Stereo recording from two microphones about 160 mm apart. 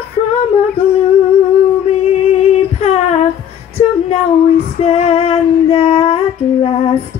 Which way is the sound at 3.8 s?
40° left (ahead or behind).